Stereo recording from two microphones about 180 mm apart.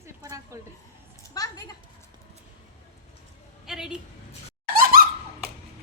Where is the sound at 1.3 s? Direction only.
20° left (ahead or behind).